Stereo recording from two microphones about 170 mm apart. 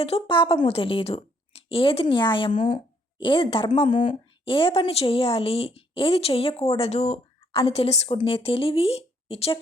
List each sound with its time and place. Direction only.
0.0 s a woman's voice: 35° left (ahead or behind)
3.8 s speech: 45° left (ahead or behind)
4.4 s a woman's voice: 30° left (ahead or behind)